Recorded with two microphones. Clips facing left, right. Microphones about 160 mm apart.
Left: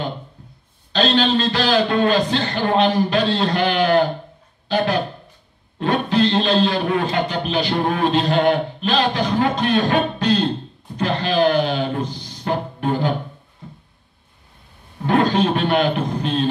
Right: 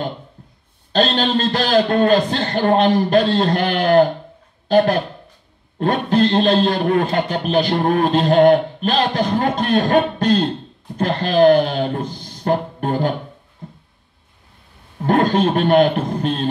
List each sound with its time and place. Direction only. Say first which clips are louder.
0.9 s a man's voice: even; 50° right (ahead or behind)
13.6 s a sound: right 2 dB; 45° right (ahead or behind)
15.0 s a man's voice: right 1 dB; 50° right (ahead or behind)